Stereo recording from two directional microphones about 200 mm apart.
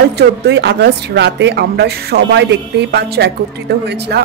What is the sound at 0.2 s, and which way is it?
Speech, 55° right (ahead or behind).